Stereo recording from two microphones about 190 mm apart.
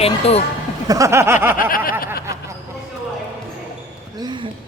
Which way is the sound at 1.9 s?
50° left (ahead or behind).